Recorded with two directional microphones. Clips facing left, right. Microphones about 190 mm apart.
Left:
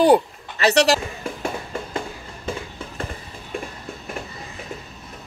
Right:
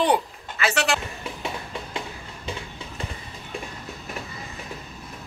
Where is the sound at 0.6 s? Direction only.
35° left (ahead or behind).